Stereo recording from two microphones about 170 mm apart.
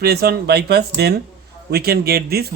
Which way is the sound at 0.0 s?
65° right (ahead or behind).